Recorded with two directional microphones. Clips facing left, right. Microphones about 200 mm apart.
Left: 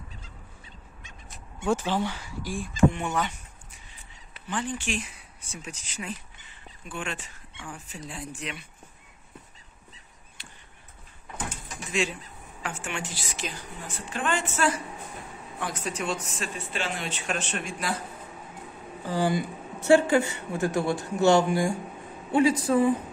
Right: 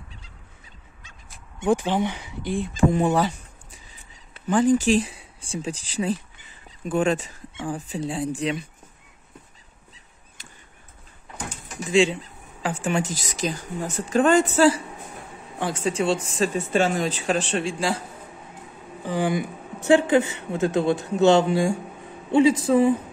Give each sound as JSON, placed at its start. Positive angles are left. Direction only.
{"t": 1.6, "sound": "speech", "side_deg": -15}
{"t": 2.8, "sound": "a sound", "side_deg": -35}
{"t": 4.5, "sound": "speech", "side_deg": -40}
{"t": 11.9, "sound": "speech", "side_deg": -30}
{"t": 16.5, "sound": "speech", "side_deg": -45}
{"t": 19.0, "sound": "speech", "side_deg": -15}